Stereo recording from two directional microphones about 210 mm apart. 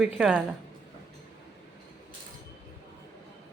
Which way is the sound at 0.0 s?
5° right (ahead or behind).